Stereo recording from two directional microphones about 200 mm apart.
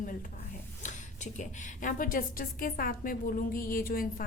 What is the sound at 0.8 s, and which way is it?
A woman's voice, 40° left (ahead or behind).